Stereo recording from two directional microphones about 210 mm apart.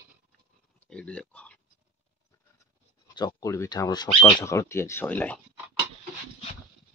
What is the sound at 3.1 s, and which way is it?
Speech, 20° left (ahead or behind).